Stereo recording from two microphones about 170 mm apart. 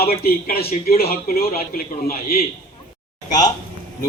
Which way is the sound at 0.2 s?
65° left (ahead or behind).